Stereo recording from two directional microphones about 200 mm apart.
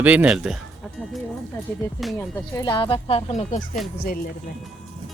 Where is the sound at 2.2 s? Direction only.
15° left (ahead or behind); by 3.8 s 40° left (ahead or behind).